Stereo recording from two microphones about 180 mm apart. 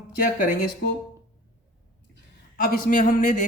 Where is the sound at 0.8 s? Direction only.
60° left (ahead or behind).